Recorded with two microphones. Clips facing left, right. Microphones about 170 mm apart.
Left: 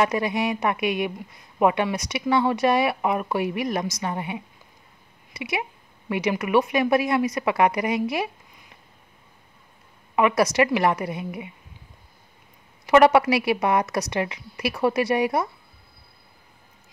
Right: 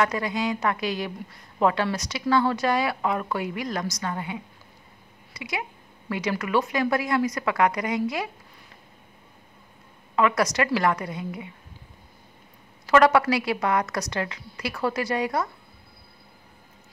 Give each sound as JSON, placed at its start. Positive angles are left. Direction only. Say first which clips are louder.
{"t": 0.0, "sound": "a woman's voice", "louder": "left 2 dB", "side_deg": 25}
{"t": 10.1, "sound": "a woman's voice", "louder": "left 3 dB", "side_deg": 20}
{"t": 12.8, "sound": "a woman's voice", "louder": "left 2 dB", "side_deg": 20}